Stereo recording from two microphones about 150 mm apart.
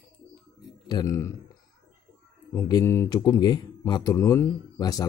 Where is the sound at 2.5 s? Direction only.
25° left (ahead or behind).